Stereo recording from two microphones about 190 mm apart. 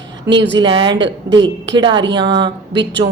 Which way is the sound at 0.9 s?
70° right (ahead or behind).